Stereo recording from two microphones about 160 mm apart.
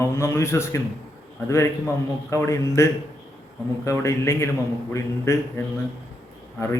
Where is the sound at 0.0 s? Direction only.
15° left (ahead or behind).